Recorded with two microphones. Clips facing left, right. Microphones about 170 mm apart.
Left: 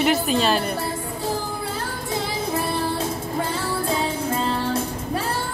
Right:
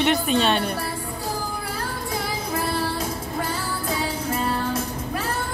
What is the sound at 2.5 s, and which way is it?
Music, 25° left (ahead or behind).